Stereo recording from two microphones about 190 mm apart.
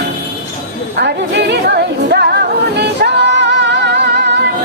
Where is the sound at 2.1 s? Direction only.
60° right (ahead or behind).